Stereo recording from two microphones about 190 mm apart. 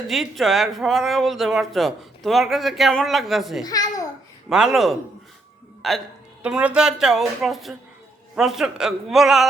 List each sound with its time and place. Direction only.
0.1 s speech: centre (ahead or behind)
3.6 s a child's voice: 20° left (ahead or behind)
4.4 s speech: 5° right (ahead or behind)